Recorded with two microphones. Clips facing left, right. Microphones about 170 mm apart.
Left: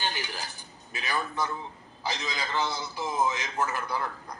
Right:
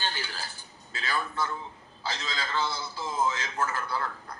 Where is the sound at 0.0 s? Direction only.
15° left (ahead or behind).